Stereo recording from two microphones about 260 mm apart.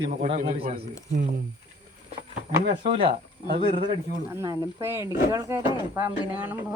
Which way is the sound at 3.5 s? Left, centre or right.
Right.